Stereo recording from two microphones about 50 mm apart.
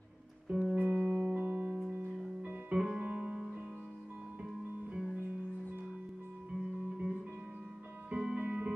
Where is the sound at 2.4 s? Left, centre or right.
Right.